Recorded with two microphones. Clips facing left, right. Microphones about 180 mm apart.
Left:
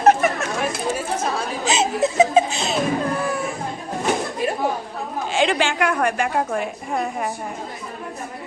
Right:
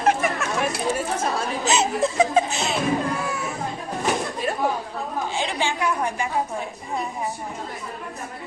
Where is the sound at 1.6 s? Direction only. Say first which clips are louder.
Left 2 dB; 20° left (ahead or behind).